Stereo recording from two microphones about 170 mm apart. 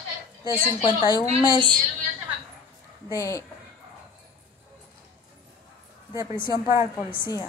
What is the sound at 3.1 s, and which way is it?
Speech, 20° left (ahead or behind).